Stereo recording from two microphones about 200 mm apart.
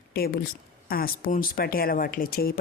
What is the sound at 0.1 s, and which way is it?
Speech, 50° left (ahead or behind).